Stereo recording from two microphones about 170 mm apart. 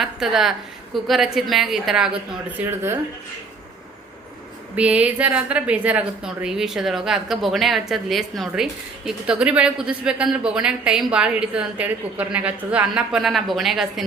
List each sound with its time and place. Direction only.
0.0 s a woman's voice: centre (ahead or behind)
4.7 s a woman's voice: 10° right (ahead or behind)